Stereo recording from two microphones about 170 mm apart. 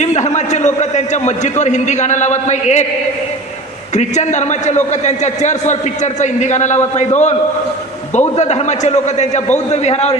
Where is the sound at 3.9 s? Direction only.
45° left (ahead or behind).